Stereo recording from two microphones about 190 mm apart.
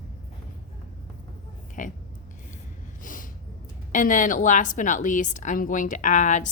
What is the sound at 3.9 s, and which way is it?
A woman's voice, 45° left (ahead or behind).